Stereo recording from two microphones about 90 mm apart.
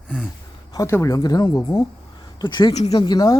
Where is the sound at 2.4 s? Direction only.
60° left (ahead or behind).